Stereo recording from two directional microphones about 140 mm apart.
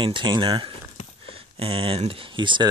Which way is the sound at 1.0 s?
60° left (ahead or behind).